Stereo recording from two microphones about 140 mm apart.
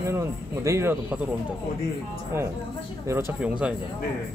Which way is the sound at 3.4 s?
10° right (ahead or behind).